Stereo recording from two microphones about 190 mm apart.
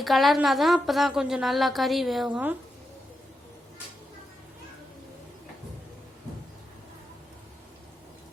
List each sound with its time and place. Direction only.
0.0 s a woman's voice: centre (ahead or behind)